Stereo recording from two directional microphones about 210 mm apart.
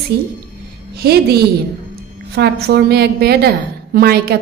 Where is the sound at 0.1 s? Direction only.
50° right (ahead or behind).